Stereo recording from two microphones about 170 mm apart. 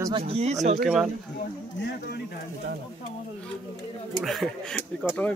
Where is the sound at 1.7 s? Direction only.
75° left (ahead or behind).